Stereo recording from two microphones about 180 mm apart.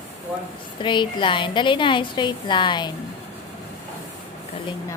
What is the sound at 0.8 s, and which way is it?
A woman's voice, 25° left (ahead or behind).